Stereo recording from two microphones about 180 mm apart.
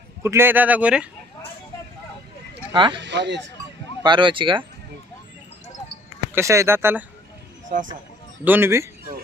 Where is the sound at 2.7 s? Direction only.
25° right (ahead or behind).